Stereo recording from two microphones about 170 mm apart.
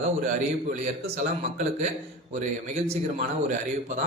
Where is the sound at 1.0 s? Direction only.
45° right (ahead or behind).